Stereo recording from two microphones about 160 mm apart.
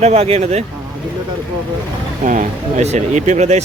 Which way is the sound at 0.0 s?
40° right (ahead or behind).